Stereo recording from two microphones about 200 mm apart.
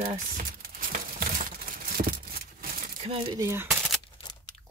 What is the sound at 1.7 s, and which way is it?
Crumpling, 50° right (ahead or behind).